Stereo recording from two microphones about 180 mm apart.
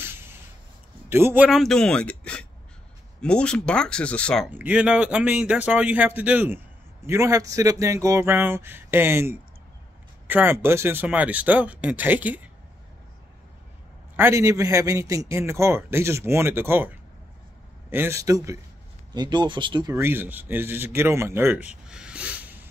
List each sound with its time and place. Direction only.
1.0 s speech: 10° right (ahead or behind); by 4.5 s 5° left (ahead or behind)
4.5 s a man's voice: 10° right (ahead or behind)
14.1 s a man's voice: 15° right (ahead or behind)
19.9 s a man's voice: 15° right (ahead or behind)
21.8 s a sound: 5° right (ahead or behind)